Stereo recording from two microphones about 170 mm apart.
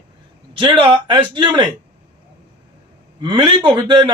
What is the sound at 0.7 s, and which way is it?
Speech, 30° right (ahead or behind).